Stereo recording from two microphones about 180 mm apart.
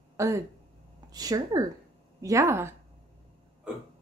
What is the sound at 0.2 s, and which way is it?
Speech, 15° right (ahead or behind).